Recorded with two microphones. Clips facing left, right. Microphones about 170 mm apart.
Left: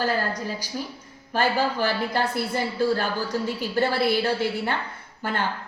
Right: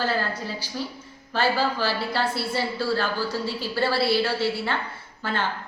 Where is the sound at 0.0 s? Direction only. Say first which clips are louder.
Left 1 dB; 15° left (ahead or behind).